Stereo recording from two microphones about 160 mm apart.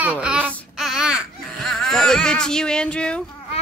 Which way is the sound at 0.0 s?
10° right (ahead or behind).